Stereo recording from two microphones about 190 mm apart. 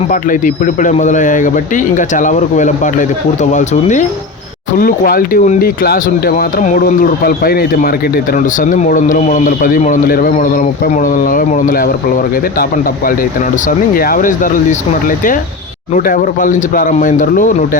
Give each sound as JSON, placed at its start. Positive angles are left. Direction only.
{"t": 0.1, "sound": "speech", "side_deg": 45}
{"t": 13.7, "sound": "speech", "side_deg": 50}